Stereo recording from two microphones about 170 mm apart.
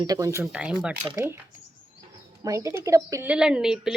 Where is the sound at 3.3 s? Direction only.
5° right (ahead or behind).